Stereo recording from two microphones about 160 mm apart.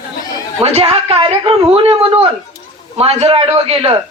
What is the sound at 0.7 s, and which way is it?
A man's voice, 40° right (ahead or behind).